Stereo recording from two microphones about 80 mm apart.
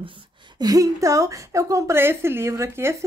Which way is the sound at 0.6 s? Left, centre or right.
Right.